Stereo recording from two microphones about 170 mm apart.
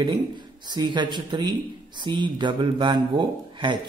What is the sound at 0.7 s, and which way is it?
Speech, 25° right (ahead or behind).